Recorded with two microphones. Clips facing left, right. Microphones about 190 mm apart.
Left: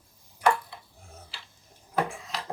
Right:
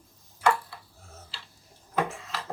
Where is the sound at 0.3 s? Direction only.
15° left (ahead or behind).